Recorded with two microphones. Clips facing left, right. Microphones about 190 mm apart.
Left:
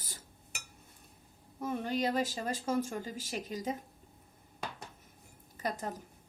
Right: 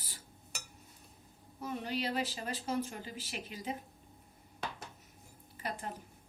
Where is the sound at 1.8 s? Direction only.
45° left (ahead or behind).